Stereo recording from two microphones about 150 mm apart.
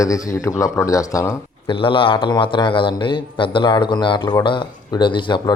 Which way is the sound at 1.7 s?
35° left (ahead or behind).